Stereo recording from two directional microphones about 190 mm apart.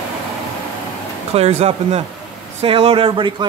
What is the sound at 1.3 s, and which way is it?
Speech, 35° right (ahead or behind).